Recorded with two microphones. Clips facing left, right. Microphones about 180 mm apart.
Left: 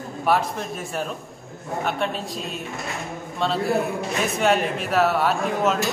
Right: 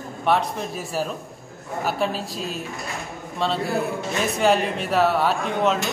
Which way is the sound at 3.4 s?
Centre (ahead or behind).